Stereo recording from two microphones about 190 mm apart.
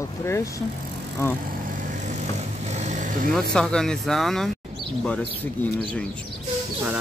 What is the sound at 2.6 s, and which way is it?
Vehicle, 35° right (ahead or behind).